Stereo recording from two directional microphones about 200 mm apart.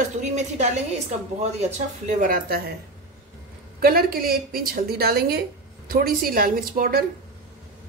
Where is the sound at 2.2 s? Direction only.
45° right (ahead or behind).